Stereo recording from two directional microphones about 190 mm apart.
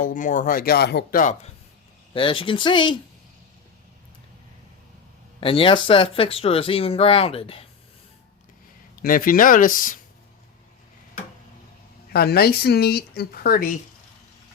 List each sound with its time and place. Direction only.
0.0 s speech: 40° left (ahead or behind); by 1.2 s 60° left (ahead or behind)
2.1 s speech: 25° left (ahead or behind)
5.4 s speech: 25° left (ahead or behind)
9.0 s speech: 50° left (ahead or behind)
12.1 s speech: 55° left (ahead or behind)